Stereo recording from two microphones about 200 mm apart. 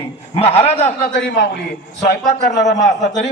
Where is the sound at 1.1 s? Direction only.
60° left (ahead or behind).